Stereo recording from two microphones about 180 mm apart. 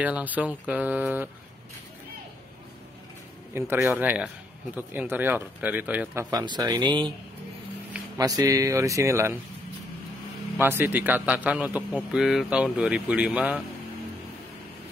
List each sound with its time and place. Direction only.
0.0 s a man's voice: 10° right (ahead or behind)
3.5 s a man's voice: 15° right (ahead or behind)
6.3 s speech: 25° right (ahead or behind)
8.2 s a man's voice: 20° right (ahead or behind)
10.6 s a man's voice: 10° right (ahead or behind)